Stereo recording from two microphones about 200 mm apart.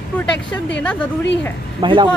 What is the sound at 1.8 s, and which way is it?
Speech, 25° right (ahead or behind).